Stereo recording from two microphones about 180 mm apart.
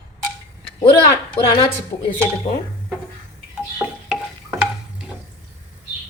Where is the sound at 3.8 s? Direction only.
15° right (ahead or behind).